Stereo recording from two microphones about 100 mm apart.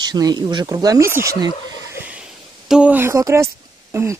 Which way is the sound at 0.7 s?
35° right (ahead or behind).